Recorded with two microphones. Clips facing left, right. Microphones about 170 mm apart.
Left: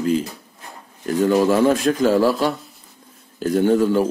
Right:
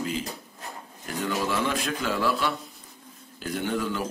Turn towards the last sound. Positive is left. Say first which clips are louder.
# left 12 dB
turn(degrees=40)  # may be behind; listen again after turning